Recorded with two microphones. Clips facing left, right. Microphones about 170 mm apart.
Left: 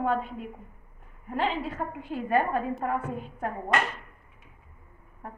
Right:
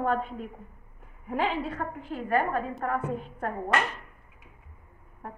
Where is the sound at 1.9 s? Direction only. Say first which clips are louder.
Left 2 dB; 15° left (ahead or behind).